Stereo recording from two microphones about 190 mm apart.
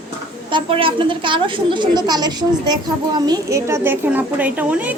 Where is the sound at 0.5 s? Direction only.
30° right (ahead or behind).